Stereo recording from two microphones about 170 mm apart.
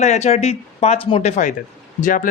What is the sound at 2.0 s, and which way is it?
Speech, 50° left (ahead or behind).